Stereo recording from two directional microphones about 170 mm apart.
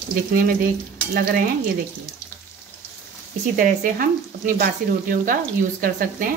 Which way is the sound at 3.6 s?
55° right (ahead or behind).